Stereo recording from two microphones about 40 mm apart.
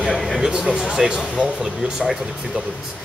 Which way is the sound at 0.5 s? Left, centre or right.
Right.